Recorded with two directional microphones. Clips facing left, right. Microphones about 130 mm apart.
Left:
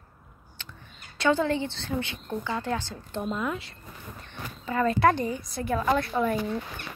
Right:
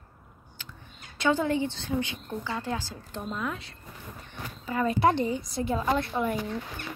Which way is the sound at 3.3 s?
5° left (ahead or behind).